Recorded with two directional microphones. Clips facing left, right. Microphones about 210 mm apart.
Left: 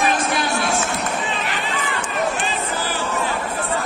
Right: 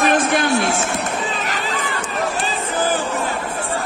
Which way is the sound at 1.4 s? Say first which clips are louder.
Right 1 dB; 40° right (ahead or behind).